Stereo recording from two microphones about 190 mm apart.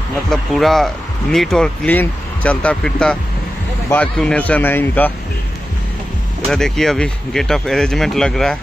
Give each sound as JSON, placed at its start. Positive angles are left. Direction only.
{"t": 0.3, "sound": "speech", "side_deg": 0}
{"t": 6.5, "sound": "speech", "side_deg": 0}